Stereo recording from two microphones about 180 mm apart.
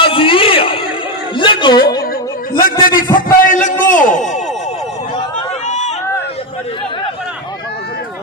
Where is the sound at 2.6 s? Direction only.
50° left (ahead or behind).